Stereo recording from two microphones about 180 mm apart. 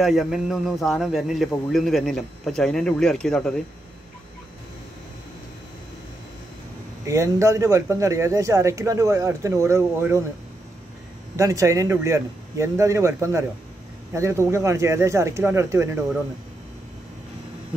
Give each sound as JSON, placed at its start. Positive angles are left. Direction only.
{"t": 0.0, "sound": "a man's voice", "side_deg": 0}
{"t": 7.1, "sound": "speech", "side_deg": -15}
{"t": 11.3, "sound": "speech", "side_deg": -15}